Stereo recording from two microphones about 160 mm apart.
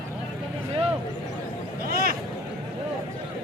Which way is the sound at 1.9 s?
70° right (ahead or behind).